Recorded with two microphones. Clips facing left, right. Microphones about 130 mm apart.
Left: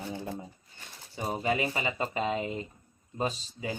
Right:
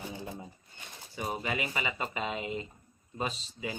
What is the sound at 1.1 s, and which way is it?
Speech, 35° left (ahead or behind).